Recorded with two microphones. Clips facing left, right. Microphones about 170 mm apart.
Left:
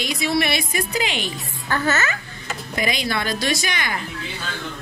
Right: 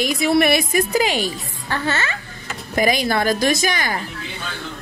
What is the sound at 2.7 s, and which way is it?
A woman's voice, 45° right (ahead or behind).